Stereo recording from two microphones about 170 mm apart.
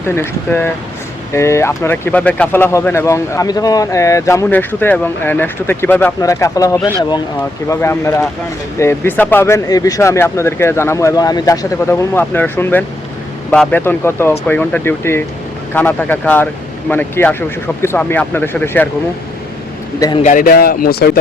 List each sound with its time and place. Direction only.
0.0 s speech: 15° left (ahead or behind)
20.2 s speech: 55° left (ahead or behind)